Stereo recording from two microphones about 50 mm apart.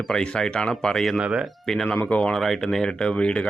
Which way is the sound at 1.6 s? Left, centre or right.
Centre.